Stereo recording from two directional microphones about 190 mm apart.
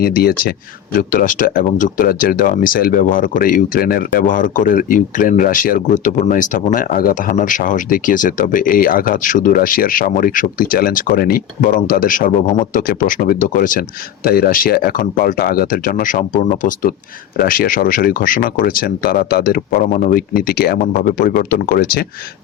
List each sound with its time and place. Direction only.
0.0 s speech: 50° left (ahead or behind)